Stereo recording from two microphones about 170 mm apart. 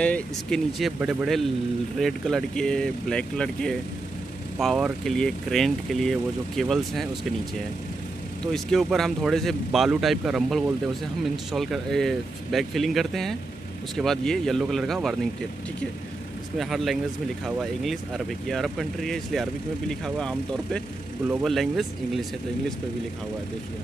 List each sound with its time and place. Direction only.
0.0 s speech: 5° left (ahead or behind)
8.5 s speech: centre (ahead or behind)
16.5 s speech: centre (ahead or behind)